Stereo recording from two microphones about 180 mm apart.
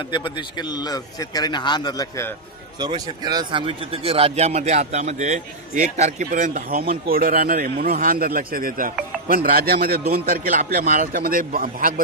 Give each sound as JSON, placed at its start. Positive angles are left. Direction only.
{"t": 0.1, "sound": "a man's voice", "side_deg": 25}
{"t": 2.7, "sound": "a man's voice", "side_deg": -25}